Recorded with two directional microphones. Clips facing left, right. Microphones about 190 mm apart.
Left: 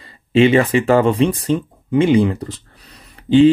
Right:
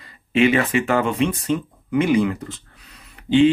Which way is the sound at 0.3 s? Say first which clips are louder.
Left 5 dB; 30° left (ahead or behind).